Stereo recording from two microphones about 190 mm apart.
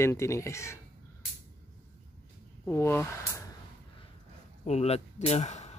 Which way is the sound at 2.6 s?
10° left (ahead or behind).